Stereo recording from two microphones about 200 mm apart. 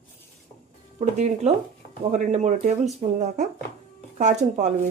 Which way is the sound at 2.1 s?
35° right (ahead or behind).